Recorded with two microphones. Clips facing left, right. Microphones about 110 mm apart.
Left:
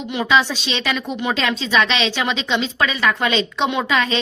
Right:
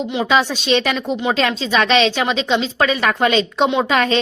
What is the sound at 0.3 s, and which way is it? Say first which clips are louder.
A woman's voice: right 2 dB; 40° right (ahead or behind).